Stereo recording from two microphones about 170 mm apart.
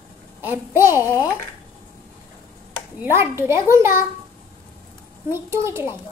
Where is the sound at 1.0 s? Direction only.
20° left (ahead or behind).